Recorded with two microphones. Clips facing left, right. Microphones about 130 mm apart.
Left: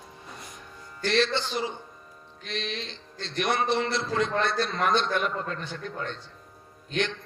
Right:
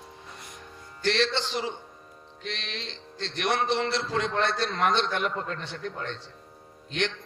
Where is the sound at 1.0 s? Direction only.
90° right.